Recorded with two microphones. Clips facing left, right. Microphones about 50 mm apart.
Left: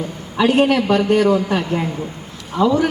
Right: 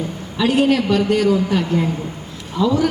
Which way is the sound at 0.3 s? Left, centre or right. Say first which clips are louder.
Left 1 dB; left.